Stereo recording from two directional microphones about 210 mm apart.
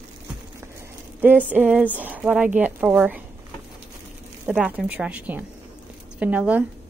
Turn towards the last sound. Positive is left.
turn(degrees=-5)  # may be behind; listen again after turning